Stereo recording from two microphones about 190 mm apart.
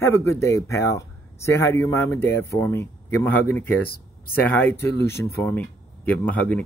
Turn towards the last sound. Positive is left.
turn(degrees=10)  # may be behind; listen again after turning